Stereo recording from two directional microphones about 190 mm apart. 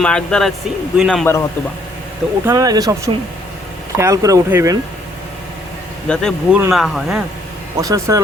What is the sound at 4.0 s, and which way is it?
Speech, 15° right (ahead or behind).